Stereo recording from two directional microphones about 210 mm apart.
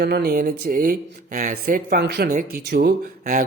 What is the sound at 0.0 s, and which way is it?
Speech, 45° right (ahead or behind).